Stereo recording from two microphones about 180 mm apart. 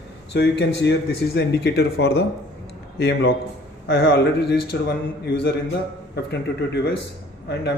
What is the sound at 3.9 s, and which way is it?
Speech, 75° left (ahead or behind).